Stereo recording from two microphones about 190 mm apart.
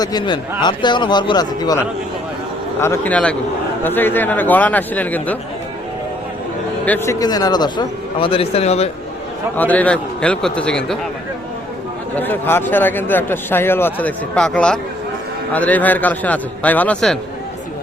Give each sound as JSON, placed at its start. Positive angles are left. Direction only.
{"t": 0.0, "sound": "speech", "side_deg": 20}
{"t": 2.8, "sound": "speech", "side_deg": 10}
{"t": 6.8, "sound": "speech", "side_deg": 10}
{"t": 9.6, "sound": "a man's voice", "side_deg": 10}
{"t": 12.1, "sound": "speech", "side_deg": 10}